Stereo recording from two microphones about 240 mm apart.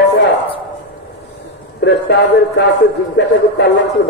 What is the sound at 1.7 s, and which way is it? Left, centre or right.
Speech, left.